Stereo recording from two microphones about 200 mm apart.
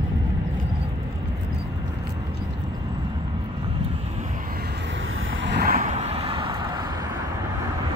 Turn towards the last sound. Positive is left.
turn(degrees=-25)  # may be behind; listen again after turning